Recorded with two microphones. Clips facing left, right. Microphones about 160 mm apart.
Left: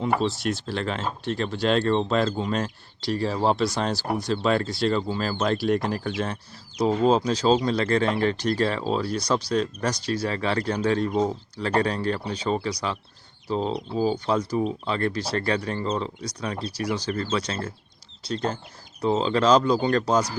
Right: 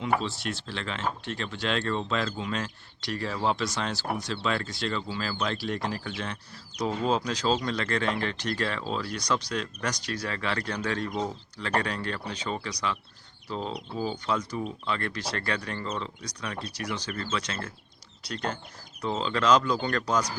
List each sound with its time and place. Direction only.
0.2 s speech: 40° left (ahead or behind)